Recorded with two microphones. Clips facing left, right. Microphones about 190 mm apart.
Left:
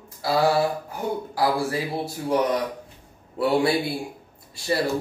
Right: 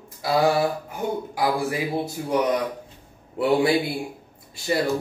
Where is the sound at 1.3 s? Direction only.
20° right (ahead or behind).